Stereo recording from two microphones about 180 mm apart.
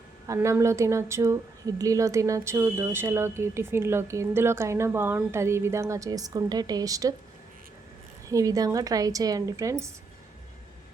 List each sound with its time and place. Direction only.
0.3 s a woman's voice: 15° right (ahead or behind)
8.3 s a woman's voice: 20° right (ahead or behind)